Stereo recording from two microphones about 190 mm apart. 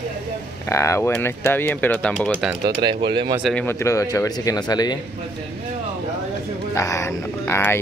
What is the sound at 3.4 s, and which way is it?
Speech, 10° left (ahead or behind).